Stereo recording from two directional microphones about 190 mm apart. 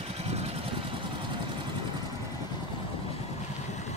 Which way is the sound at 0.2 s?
35° right (ahead or behind).